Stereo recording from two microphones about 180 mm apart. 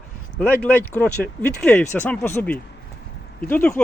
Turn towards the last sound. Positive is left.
turn(degrees=10)  # may be behind; listen again after turning